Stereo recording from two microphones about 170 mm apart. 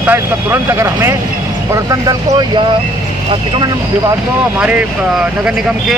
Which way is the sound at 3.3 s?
25° right (ahead or behind).